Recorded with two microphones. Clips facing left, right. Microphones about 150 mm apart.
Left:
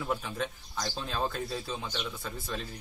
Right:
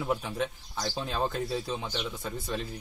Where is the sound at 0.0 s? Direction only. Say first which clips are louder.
Right 3 dB; 15° right (ahead or behind).